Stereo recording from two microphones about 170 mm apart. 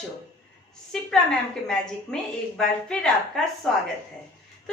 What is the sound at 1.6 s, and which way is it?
A woman's voice, 5° left (ahead or behind).